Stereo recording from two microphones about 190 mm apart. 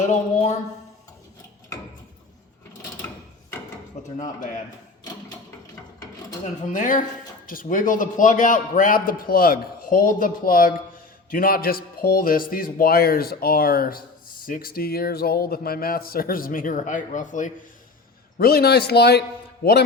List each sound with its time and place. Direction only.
0.0 s speech: 40° left (ahead or behind)
6.4 s a man's voice: 40° left (ahead or behind)
18.3 s a man's voice: 55° left (ahead or behind)